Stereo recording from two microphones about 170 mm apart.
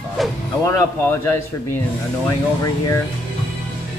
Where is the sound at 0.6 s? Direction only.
15° left (ahead or behind).